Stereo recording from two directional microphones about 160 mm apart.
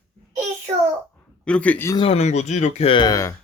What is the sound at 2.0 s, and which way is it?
Speech, 40° left (ahead or behind).